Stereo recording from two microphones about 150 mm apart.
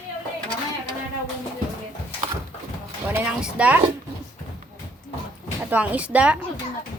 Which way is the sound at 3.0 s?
10° right (ahead or behind).